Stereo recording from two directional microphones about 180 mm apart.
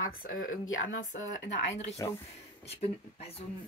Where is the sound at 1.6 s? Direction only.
40° left (ahead or behind).